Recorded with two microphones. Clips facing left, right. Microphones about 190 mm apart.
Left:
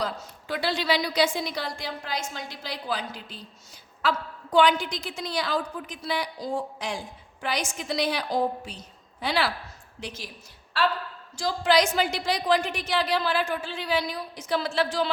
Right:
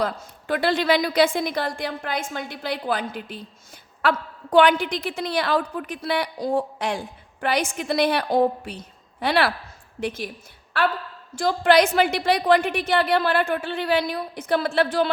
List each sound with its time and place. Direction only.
0.0 s a woman's voice: 55° right (ahead or behind)
11.3 s a woman's voice: 60° right (ahead or behind)